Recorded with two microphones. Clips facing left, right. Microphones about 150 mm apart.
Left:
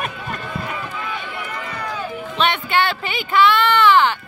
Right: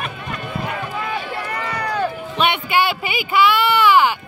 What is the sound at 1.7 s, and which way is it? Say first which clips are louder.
Run: right 7 dB; 70° right (ahead or behind).